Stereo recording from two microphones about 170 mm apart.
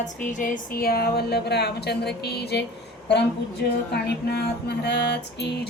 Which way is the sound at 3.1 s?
90° left.